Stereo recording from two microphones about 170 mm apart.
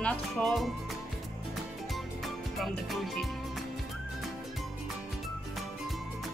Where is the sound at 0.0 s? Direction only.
5° left (ahead or behind).